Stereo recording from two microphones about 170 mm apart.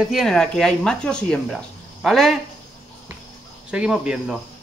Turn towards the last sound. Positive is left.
turn(degrees=-5)  # may be behind; listen again after turning